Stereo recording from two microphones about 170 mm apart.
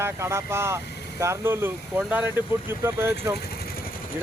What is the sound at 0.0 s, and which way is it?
Speech, 15° right (ahead or behind).